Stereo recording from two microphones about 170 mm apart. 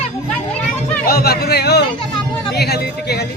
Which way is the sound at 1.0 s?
65° left (ahead or behind).